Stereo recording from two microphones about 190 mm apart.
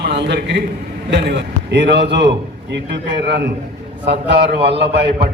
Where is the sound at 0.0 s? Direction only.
65° right (ahead or behind).